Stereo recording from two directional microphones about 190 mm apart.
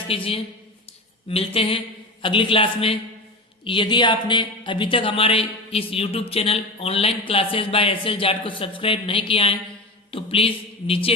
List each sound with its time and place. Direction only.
0.1 s speech: 30° left (ahead or behind)
1.3 s a sound: 30° left (ahead or behind)
2.2 s speech: 25° left (ahead or behind)